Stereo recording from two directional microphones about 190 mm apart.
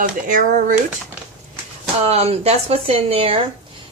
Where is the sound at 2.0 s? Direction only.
35° right (ahead or behind).